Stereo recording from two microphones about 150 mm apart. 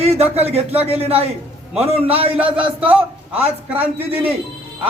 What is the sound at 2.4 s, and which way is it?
A man's voice, 10° right (ahead or behind).